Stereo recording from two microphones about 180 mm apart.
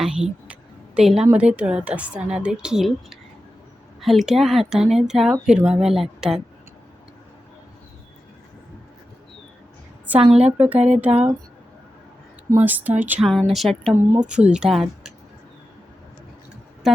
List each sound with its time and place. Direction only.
0.0 s speech: 5° right (ahead or behind)
10.1 s speech: 5° right (ahead or behind)
10.8 s speech: 40° right (ahead or behind)
11.0 s speech: 10° right (ahead or behind)
12.5 s speech: 10° right (ahead or behind)
13.9 s speech: 10° right (ahead or behind)
16.8 s speech: centre (ahead or behind)